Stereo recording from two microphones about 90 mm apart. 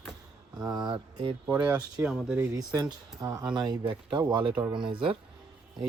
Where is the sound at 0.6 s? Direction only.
45° right (ahead or behind); by 1.3 s 70° right (ahead or behind).